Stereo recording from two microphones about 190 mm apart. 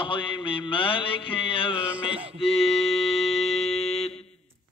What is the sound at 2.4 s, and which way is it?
Music, 30° left (ahead or behind).